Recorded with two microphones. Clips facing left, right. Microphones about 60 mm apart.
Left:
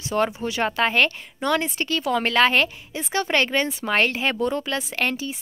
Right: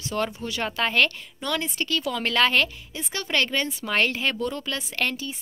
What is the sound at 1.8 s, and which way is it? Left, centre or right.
A woman's voice, left.